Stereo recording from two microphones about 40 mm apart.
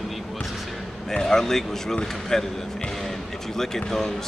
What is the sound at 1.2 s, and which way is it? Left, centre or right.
Speech, centre.